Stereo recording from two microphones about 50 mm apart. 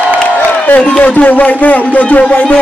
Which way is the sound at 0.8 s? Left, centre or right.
Left.